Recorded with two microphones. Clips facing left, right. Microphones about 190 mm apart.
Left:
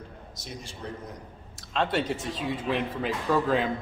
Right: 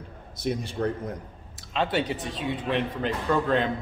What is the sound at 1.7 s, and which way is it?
Speech, centre (ahead or behind).